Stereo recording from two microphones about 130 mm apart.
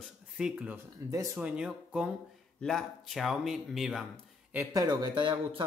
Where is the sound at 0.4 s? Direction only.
10° right (ahead or behind).